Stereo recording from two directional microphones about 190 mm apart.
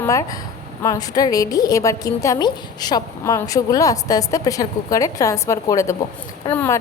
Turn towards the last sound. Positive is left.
turn(degrees=10)  # may be behind; listen again after turning